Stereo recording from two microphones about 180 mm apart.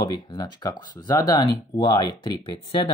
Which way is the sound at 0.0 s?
25° left (ahead or behind).